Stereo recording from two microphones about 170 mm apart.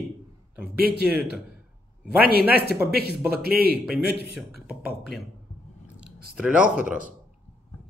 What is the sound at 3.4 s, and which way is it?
Speech, 65° right (ahead or behind).